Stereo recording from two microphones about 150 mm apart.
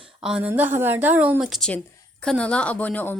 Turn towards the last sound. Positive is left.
turn(degrees=10)  # may be behind; listen again after turning